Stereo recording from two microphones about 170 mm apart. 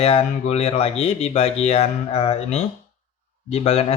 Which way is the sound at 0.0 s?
35° left (ahead or behind).